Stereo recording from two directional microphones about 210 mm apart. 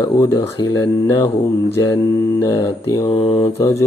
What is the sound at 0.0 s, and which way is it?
Mantra, 15° left (ahead or behind).